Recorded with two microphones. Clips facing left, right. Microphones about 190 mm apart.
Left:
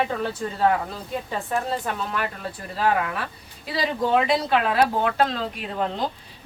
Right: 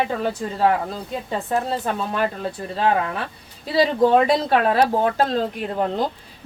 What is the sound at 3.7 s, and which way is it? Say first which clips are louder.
Speech: right 6 dB; 40° right (ahead or behind).